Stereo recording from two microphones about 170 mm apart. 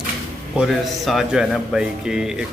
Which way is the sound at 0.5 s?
Centre (ahead or behind).